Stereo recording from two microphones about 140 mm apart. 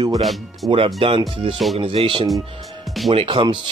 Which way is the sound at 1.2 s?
40° right (ahead or behind).